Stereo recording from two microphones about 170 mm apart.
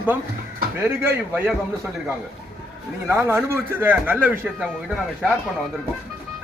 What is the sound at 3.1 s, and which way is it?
Speech, 15° right (ahead or behind).